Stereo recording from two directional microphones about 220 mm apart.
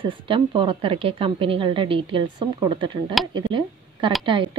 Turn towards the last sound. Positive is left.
turn(degrees=-20)  # may be behind; listen again after turning